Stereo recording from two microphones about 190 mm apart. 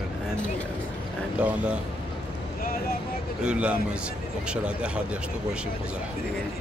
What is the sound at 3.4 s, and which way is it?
Speech, 5° right (ahead or behind).